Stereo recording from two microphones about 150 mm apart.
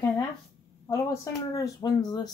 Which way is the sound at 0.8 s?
20° left (ahead or behind).